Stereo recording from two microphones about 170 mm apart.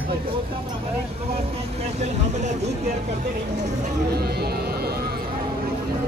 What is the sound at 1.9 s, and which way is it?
Vehicle, 40° right (ahead or behind).